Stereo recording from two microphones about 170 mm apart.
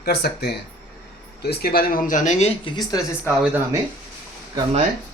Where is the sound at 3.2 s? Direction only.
10° right (ahead or behind).